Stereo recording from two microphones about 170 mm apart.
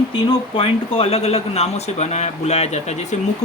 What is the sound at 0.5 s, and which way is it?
Speech, 35° left (ahead or behind).